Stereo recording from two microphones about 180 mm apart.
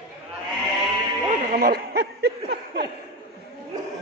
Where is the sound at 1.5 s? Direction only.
60° right (ahead or behind).